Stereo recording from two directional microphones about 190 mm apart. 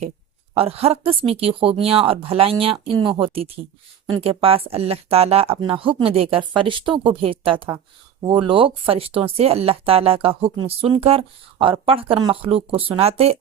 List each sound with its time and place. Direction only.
0.5 s speech: 30° right (ahead or behind)